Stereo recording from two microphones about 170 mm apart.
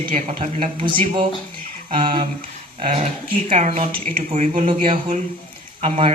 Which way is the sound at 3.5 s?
45° right (ahead or behind).